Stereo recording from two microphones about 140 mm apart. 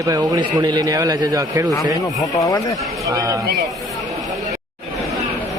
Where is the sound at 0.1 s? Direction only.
25° right (ahead or behind).